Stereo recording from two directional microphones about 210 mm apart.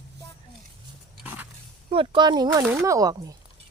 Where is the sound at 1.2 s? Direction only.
10° right (ahead or behind).